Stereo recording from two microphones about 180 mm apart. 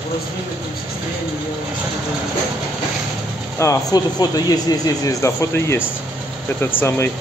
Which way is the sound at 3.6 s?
20° left (ahead or behind).